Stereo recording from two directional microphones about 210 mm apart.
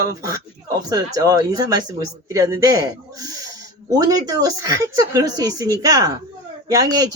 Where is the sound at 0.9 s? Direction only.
15° right (ahead or behind).